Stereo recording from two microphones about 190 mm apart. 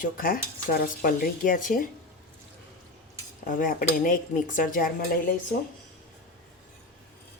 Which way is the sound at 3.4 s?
45° left (ahead or behind).